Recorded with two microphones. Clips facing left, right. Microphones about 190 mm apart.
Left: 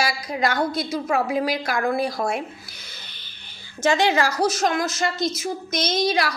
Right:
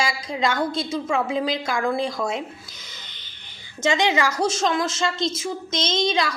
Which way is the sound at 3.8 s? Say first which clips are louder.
Left 1 dB; 20° right (ahead or behind).